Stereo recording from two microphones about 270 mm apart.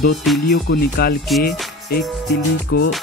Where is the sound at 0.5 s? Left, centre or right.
Left.